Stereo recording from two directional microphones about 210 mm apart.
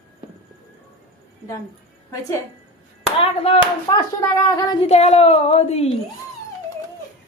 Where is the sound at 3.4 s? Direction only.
25° left (ahead or behind).